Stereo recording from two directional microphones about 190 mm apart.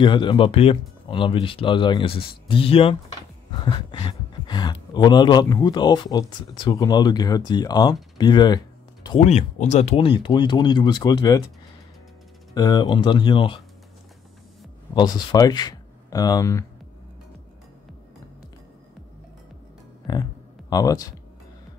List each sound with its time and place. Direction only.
0.0 s speech: 25° left (ahead or behind)
9.2 s speech: 35° left (ahead or behind); by 11.4 s 20° left (ahead or behind)
12.5 s speech: 20° left (ahead or behind)
15.0 s speech: 20° left (ahead or behind)
20.1 s music: 20° left (ahead or behind)
20.7 s speech: 20° left (ahead or behind)